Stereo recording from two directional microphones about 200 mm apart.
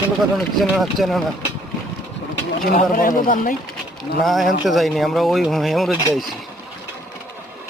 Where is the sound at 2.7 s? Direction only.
40° left (ahead or behind).